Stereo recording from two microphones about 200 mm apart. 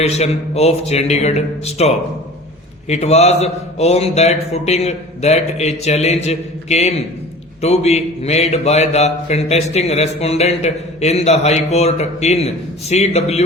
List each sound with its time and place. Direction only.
0.0 s speech: 30° left (ahead or behind)